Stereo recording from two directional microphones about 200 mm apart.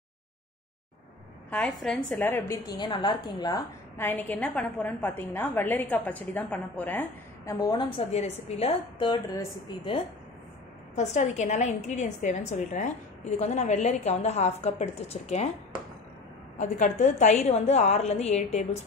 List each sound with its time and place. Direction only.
1.5 s a woman's voice: 5° left (ahead or behind)
7.5 s a woman's voice: 20° left (ahead or behind)
11.0 s a woman's voice: 35° left (ahead or behind)
16.5 s a woman's voice: 40° left (ahead or behind)